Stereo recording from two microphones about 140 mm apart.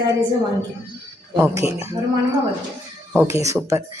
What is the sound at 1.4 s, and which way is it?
Speech, 20° right (ahead or behind).